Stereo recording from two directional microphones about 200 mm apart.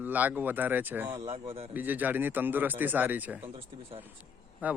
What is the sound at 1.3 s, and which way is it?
Speech, 30° right (ahead or behind).